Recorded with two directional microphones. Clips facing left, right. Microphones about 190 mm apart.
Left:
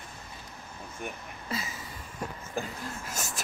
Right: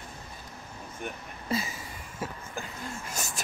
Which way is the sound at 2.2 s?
5° right (ahead or behind).